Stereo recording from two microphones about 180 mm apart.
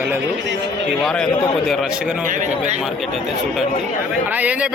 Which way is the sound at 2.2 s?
45° right (ahead or behind).